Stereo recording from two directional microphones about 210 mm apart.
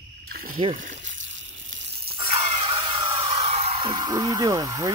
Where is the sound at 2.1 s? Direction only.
25° right (ahead or behind).